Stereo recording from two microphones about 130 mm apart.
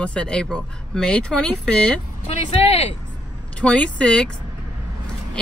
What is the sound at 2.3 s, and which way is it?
Speech, 50° left (ahead or behind).